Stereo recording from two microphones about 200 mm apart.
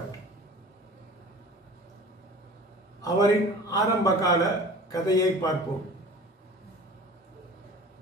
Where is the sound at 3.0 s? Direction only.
15° left (ahead or behind).